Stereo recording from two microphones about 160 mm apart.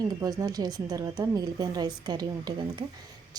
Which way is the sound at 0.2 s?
20° right (ahead or behind).